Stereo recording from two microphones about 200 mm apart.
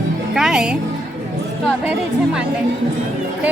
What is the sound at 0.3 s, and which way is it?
Music, 5° right (ahead or behind).